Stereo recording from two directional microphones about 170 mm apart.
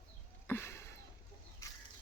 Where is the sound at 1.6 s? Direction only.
20° left (ahead or behind).